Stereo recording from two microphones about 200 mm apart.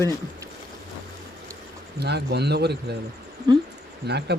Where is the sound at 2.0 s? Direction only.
55° right (ahead or behind).